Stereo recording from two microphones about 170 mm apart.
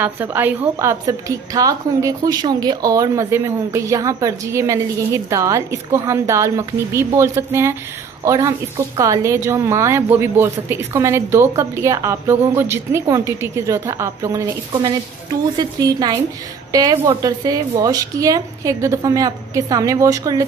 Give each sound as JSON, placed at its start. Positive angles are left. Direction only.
{"t": 0.0, "sound": "a woman's voice", "side_deg": -10}